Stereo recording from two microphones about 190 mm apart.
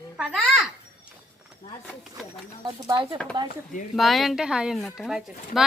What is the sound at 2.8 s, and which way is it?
Speech, 25° right (ahead or behind).